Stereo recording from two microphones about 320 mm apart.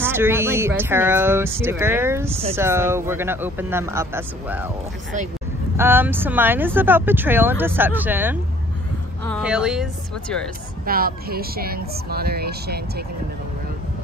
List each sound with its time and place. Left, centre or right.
0.0 s speech: centre
5.8 s a woman's voice: centre
10.9 s speech: right